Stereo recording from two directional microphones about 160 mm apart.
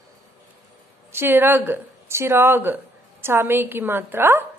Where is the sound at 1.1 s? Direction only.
10° right (ahead or behind).